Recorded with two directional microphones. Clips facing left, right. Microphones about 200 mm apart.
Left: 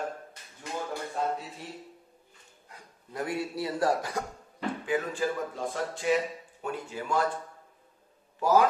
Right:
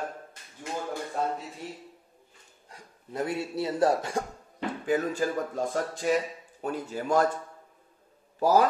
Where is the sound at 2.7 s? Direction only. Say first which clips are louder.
Right 4 dB; 25° right (ahead or behind).